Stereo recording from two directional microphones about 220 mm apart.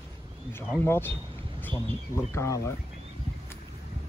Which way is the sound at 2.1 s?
10° left (ahead or behind).